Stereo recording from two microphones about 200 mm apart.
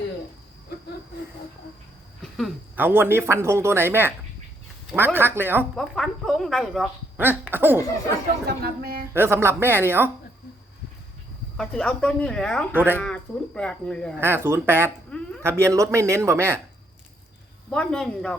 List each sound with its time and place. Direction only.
2.7 s speech: 10° right (ahead or behind)
5.7 s speech: centre (ahead or behind)
7.2 s speech: 10° right (ahead or behind)
8.4 s speech: 50° right (ahead or behind)
9.1 s speech: 10° right (ahead or behind)
11.5 s speech: 5° left (ahead or behind)
12.7 s speech: 10° right (ahead or behind)
13.0 s speech: 5° left (ahead or behind)
14.2 s speech: 10° right (ahead or behind)
17.7 s speech: 5° left (ahead or behind)